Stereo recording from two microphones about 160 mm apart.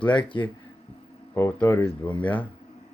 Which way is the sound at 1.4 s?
15° left (ahead or behind).